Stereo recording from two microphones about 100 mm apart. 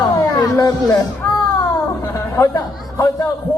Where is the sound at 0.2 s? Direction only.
35° left (ahead or behind).